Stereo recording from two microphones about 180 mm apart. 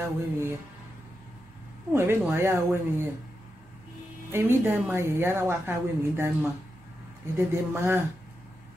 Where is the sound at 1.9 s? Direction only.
15° right (ahead or behind).